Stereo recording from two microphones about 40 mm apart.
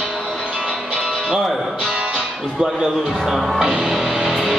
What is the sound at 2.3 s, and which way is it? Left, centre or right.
Speech, centre.